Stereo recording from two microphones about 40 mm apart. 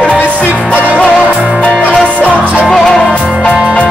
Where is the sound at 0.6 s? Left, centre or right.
Left.